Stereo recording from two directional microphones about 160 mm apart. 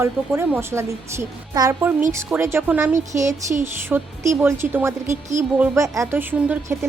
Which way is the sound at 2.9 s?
50° right (ahead or behind).